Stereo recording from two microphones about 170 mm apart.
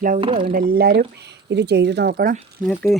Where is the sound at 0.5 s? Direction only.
60° right (ahead or behind); by 2.3 s 75° right (ahead or behind).